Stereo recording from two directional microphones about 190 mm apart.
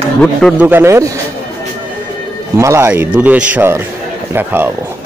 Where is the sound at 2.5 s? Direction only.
15° right (ahead or behind).